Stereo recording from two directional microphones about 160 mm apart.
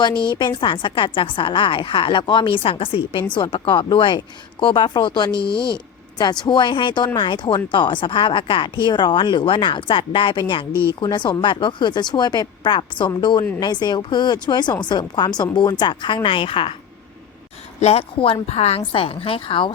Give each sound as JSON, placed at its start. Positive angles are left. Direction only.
{"t": 0.0, "sound": "speech", "side_deg": 30}
{"t": 17.7, "sound": "speech", "side_deg": 40}